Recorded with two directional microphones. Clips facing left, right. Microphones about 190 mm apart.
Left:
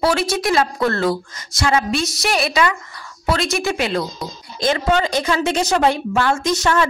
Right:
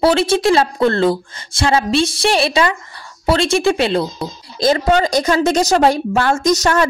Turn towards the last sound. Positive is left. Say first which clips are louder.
# right 3 dB
turn(degrees=-40)  # may be behind; listen again after turning